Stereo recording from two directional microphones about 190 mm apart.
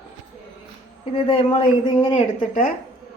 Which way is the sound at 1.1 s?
30° left (ahead or behind).